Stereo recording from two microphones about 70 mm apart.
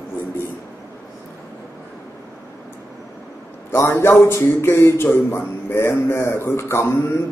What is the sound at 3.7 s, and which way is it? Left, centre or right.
A man's voice, left.